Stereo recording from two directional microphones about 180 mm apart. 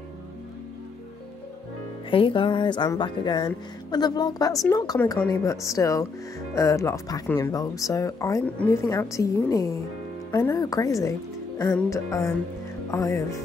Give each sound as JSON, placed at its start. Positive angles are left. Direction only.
{"t": 2.0, "sound": "speech", "side_deg": 30}